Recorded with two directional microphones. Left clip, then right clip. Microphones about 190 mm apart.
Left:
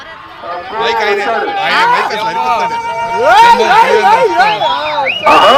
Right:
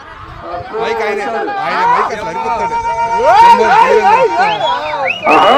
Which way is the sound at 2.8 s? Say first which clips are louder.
Even; 55° left (ahead or behind).